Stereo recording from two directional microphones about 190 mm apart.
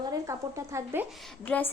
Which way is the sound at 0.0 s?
20° right (ahead or behind).